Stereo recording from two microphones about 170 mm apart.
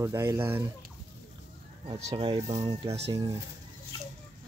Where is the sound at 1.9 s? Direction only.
35° right (ahead or behind).